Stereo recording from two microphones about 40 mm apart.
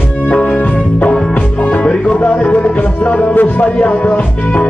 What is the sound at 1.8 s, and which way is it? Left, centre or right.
Music, left.